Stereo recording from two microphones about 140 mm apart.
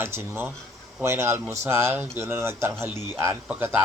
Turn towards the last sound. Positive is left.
turn(degrees=-10)  # may be behind; listen again after turning